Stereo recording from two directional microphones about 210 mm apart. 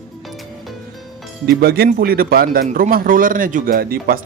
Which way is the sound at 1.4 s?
45° right (ahead or behind).